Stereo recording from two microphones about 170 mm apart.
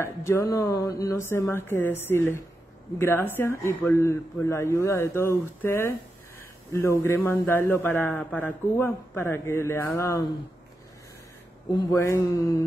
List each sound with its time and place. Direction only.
0.0 s a man's voice: 15° left (ahead or behind)
9.9 s mantra: 20° left (ahead or behind)
11.7 s mantra: 20° left (ahead or behind)